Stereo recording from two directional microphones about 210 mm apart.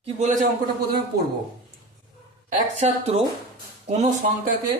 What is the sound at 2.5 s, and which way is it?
Speech, 30° right (ahead or behind).